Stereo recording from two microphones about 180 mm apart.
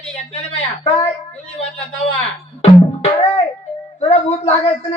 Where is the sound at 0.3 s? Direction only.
35° left (ahead or behind).